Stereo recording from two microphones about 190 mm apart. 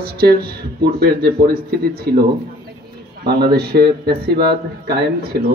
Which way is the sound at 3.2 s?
60° right (ahead or behind).